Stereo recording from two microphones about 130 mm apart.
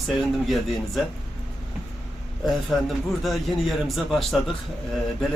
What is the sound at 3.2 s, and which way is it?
A man's voice, centre (ahead or behind).